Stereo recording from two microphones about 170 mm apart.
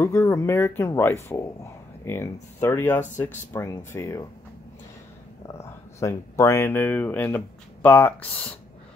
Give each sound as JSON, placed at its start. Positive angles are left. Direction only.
{"t": 0.0, "sound": "speech", "side_deg": 15}
{"t": 5.5, "sound": "speech", "side_deg": 15}